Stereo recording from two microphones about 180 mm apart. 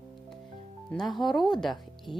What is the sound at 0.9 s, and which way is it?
Speech, centre (ahead or behind).